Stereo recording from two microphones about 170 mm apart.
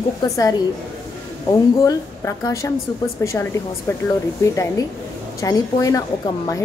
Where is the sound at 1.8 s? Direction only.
20° left (ahead or behind).